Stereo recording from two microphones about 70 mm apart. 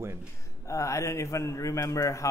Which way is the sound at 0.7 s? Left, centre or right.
Left.